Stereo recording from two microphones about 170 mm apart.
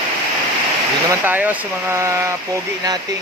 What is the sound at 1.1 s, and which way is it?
Speech, 10° right (ahead or behind).